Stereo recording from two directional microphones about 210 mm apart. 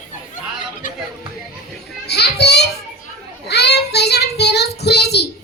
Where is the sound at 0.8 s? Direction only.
40° left (ahead or behind).